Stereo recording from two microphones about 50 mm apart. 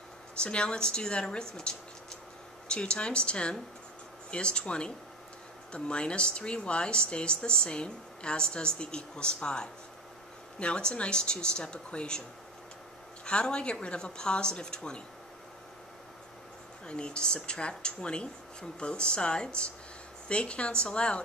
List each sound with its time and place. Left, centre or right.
0.4 s speech: centre
13.2 s speech: centre
16.8 s speech: centre